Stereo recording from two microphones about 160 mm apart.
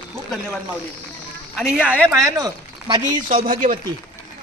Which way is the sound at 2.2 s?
20° right (ahead or behind).